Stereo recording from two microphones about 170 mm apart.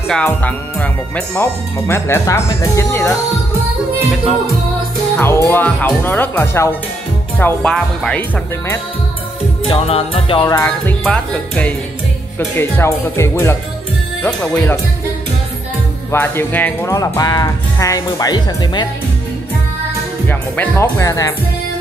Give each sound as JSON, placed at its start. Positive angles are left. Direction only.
{"t": 0.1, "sound": "speech", "side_deg": 10}
{"t": 5.1, "sound": "speech", "side_deg": 15}
{"t": 9.7, "sound": "music", "side_deg": 35}
{"t": 10.5, "sound": "speech", "side_deg": 15}
{"t": 16.1, "sound": "speech", "side_deg": 15}
{"t": 20.2, "sound": "speech", "side_deg": 10}